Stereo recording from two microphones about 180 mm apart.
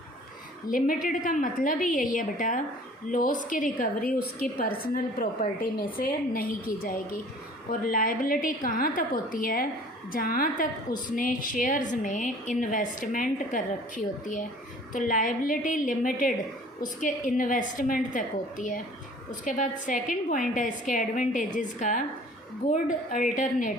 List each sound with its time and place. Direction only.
0.7 s a woman's voice: 50° left (ahead or behind)